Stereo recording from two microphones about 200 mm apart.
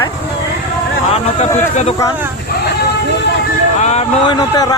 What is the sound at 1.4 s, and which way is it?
Speech, 35° left (ahead or behind).